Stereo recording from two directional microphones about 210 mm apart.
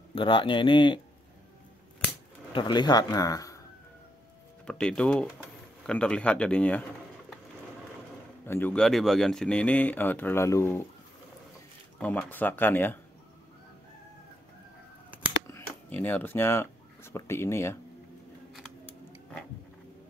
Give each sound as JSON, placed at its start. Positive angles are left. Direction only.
{"t": 0.1, "sound": "speech", "side_deg": 25}
{"t": 2.5, "sound": "speech", "side_deg": 20}
{"t": 4.6, "sound": "speech", "side_deg": 5}
{"t": 8.5, "sound": "speech", "side_deg": 10}
{"t": 12.0, "sound": "speech", "side_deg": 5}
{"t": 15.4, "sound": "speech", "side_deg": 10}